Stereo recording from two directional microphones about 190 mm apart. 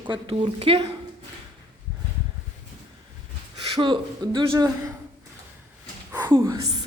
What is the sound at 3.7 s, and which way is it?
Speech, 25° right (ahead or behind).